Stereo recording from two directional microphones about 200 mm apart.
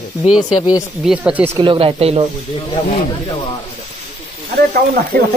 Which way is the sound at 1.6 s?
25° right (ahead or behind).